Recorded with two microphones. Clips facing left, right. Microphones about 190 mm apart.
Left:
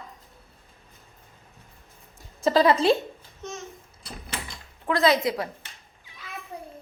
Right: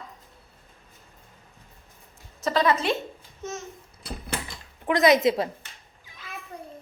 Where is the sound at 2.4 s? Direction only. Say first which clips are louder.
Left 4 dB; 30° left (ahead or behind).